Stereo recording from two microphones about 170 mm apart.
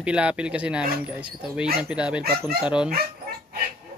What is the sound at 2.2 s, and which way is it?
Speech, 65° right (ahead or behind).